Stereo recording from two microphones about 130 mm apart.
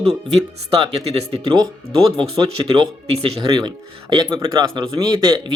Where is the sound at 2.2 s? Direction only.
40° right (ahead or behind).